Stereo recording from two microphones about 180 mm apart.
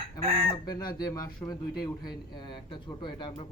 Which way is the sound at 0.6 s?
20° left (ahead or behind).